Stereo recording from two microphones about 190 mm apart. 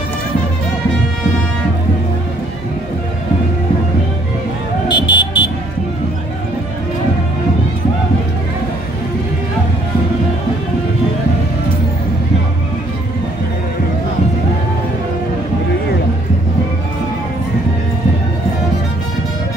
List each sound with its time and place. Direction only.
4.8 s music: 25° left (ahead or behind)